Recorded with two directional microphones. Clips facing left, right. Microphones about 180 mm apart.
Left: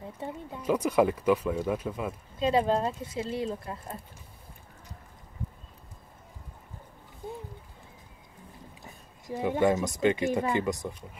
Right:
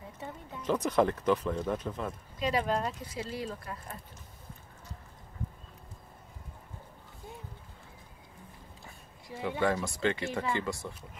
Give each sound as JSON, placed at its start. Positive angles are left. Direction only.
{"t": 0.2, "sound": "speech", "side_deg": 30}
{"t": 0.6, "sound": "speech", "side_deg": 10}
{"t": 2.3, "sound": "speech", "side_deg": 25}
{"t": 9.6, "sound": "speech", "side_deg": 20}